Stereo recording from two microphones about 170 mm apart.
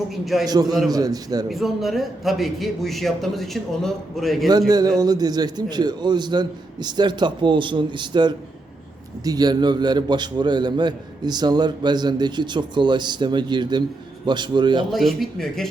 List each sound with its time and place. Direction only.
0.1 s a man's voice: centre (ahead or behind)
0.4 s a man's voice: 25° right (ahead or behind)
1.5 s a man's voice: centre (ahead or behind)
4.7 s a man's voice: 25° right (ahead or behind)
14.9 s a man's voice: centre (ahead or behind)